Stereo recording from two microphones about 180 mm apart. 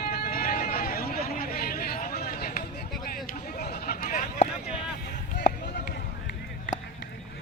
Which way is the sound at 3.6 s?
60° left (ahead or behind).